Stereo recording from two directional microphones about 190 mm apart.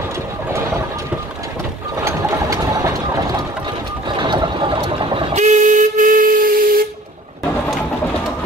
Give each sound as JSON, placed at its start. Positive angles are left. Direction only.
{"t": 2.0, "sound": "engine", "side_deg": -15}
{"t": 4.2, "sound": "a sound", "side_deg": -25}
{"t": 5.3, "sound": "steam whistle", "side_deg": -40}